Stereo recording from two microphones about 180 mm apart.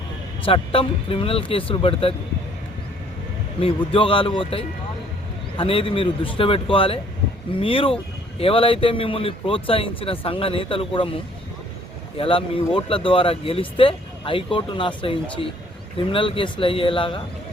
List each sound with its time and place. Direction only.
0.4 s speech: 30° left (ahead or behind)
3.6 s speech: 30° left (ahead or behind)
12.1 s speech: 30° left (ahead or behind)